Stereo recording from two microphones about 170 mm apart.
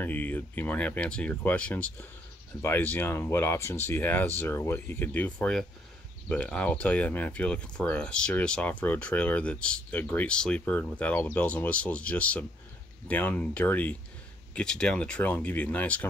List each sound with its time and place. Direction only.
0.0 s speech: 10° left (ahead or behind)